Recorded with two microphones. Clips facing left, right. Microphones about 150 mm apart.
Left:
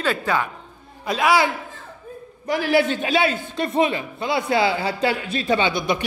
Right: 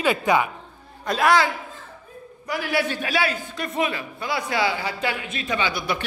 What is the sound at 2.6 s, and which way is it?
A man's voice, 25° left (ahead or behind).